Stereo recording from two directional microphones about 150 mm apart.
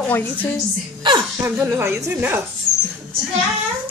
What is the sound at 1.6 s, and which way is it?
Speech, 15° right (ahead or behind).